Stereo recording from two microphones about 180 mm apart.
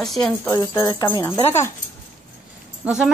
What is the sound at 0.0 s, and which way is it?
Speech, centre (ahead or behind).